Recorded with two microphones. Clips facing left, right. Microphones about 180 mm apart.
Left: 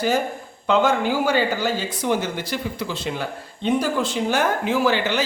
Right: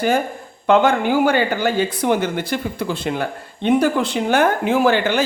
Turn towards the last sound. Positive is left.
turn(degrees=-55)  # may be behind; listen again after turning